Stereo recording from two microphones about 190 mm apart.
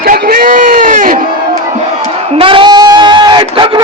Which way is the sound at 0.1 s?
50° right (ahead or behind).